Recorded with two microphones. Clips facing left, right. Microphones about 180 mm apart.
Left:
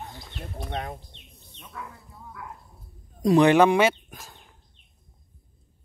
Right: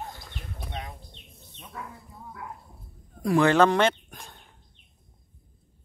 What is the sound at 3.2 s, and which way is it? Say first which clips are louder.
Speech: left 3 dB; 20° left (ahead or behind).